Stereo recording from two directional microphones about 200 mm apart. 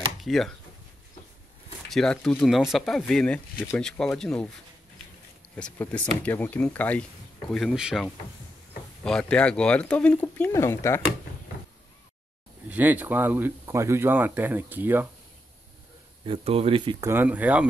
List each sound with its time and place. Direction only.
0.2 s speech: centre (ahead or behind)
1.9 s speech: centre (ahead or behind)
5.6 s speech: 10° left (ahead or behind)
12.6 s speech: 10° right (ahead or behind)
16.3 s speech: 30° right (ahead or behind)
17.1 s speech: 10° right (ahead or behind)